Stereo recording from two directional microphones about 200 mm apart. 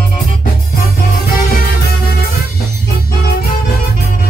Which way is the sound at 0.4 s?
45° left (ahead or behind).